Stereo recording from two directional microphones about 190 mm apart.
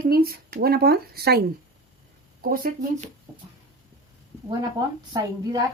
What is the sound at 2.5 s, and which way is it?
Speech, 45° right (ahead or behind).